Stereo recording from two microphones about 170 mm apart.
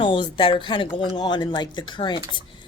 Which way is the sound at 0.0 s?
30° left (ahead or behind).